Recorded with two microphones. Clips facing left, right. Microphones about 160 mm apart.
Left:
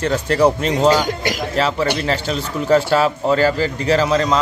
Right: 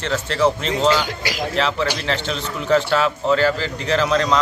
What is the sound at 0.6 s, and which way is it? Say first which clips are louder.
A man's voice: left 4 dB; 45° left (ahead or behind).